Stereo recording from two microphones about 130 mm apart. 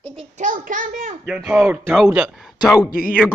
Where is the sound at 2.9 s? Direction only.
90° left.